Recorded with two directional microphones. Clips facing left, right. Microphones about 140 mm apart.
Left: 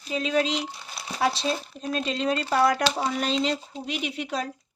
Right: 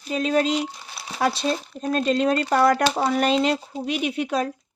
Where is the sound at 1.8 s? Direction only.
50° right (ahead or behind).